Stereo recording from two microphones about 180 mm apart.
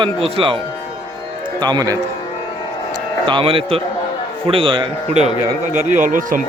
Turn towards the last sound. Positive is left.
turn(degrees=-45)  # may be behind; listen again after turning